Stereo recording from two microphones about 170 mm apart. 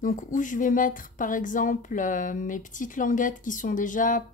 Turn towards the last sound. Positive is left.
turn(degrees=50)  # may be behind; listen again after turning